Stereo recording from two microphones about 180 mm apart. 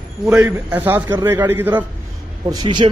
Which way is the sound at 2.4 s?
25° right (ahead or behind).